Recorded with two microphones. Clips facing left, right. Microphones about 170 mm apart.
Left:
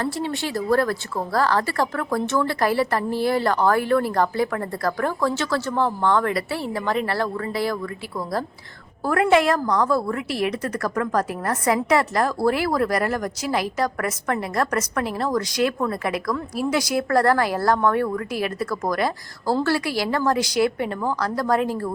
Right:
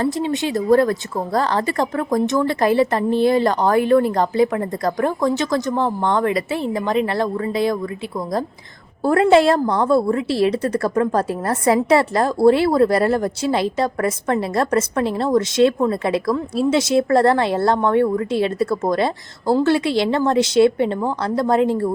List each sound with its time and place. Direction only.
0.0 s a woman's voice: 20° right (ahead or behind)
9.0 s a woman's voice: 30° right (ahead or behind)